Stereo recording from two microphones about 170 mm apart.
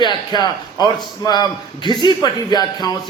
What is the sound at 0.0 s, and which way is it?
A man's voice, 25° left (ahead or behind).